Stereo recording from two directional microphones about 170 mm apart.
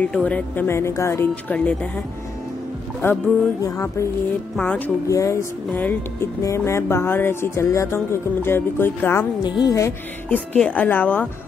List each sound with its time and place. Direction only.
0.0 s speech: 10° left (ahead or behind)
3.0 s speech: 15° left (ahead or behind)